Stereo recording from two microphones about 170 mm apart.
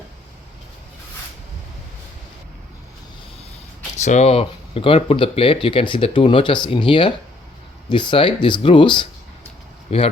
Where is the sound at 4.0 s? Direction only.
40° left (ahead or behind).